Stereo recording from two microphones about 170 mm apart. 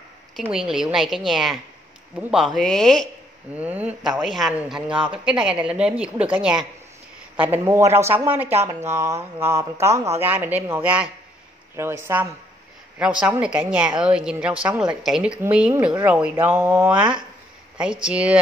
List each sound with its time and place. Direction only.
0.4 s a man's voice: 5° right (ahead or behind)
3.5 s a man's voice: 10° right (ahead or behind)
18.0 s speech: 5° right (ahead or behind)